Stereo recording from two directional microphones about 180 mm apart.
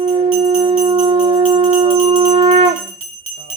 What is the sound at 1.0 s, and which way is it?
Music, 25° right (ahead or behind).